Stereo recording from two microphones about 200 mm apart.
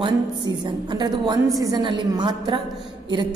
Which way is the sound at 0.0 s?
20° right (ahead or behind).